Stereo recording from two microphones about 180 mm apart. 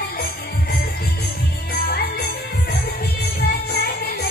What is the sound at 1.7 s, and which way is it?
Music, 55° left (ahead or behind).